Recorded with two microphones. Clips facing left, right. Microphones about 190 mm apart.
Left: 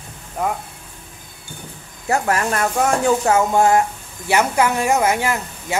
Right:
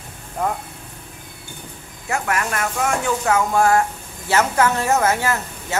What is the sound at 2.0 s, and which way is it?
Speech, 35° left (ahead or behind).